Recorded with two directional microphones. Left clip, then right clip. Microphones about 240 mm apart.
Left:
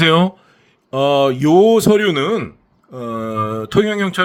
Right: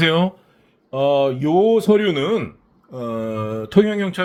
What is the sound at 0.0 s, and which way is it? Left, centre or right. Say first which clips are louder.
Speech: left 4 dB; left.